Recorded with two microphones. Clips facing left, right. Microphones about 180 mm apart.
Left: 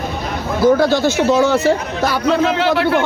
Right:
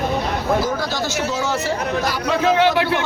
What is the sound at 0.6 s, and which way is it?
Speech, 60° left (ahead or behind).